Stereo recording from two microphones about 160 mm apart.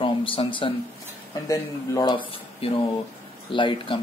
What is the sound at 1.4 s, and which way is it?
Speech, 20° left (ahead or behind).